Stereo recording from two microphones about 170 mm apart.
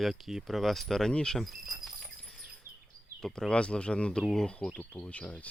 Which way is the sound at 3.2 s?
Centre (ahead or behind).